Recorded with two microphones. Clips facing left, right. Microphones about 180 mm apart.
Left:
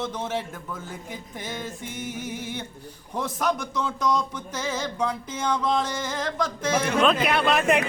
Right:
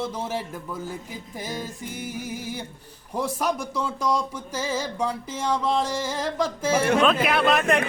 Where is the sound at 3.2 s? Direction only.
10° right (ahead or behind).